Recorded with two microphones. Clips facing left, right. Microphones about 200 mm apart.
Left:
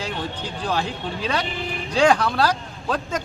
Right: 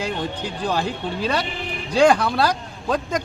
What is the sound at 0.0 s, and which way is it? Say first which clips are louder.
Speech: right 3 dB; 10° right (ahead or behind).